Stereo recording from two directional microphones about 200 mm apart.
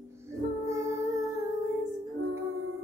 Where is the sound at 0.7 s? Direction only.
15° right (ahead or behind).